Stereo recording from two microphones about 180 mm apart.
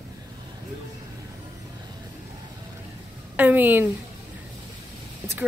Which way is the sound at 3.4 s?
10° right (ahead or behind).